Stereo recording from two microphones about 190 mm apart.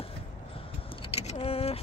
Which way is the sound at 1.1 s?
35° left (ahead or behind).